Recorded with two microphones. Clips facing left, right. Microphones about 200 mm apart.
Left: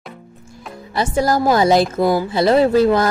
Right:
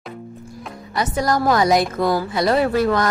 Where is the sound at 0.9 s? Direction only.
30° left (ahead or behind).